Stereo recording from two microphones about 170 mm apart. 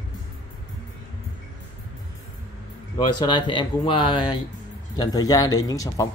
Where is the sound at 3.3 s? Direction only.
30° left (ahead or behind).